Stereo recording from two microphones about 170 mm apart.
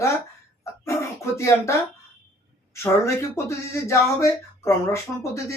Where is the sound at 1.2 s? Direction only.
15° left (ahead or behind).